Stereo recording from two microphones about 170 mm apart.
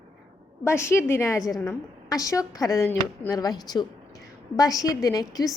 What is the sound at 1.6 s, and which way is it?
A woman's voice, 20° left (ahead or behind).